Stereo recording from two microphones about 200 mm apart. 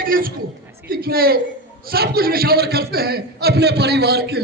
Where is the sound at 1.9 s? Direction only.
50° right (ahead or behind).